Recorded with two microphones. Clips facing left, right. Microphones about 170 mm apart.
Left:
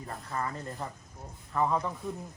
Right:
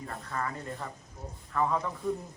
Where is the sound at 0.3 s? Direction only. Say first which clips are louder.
Even; 25° left (ahead or behind).